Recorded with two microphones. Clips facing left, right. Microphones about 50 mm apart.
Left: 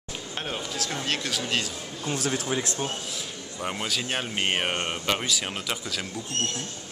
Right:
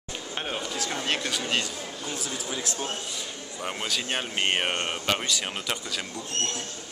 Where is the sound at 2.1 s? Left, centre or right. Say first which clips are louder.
Left 9 dB; left.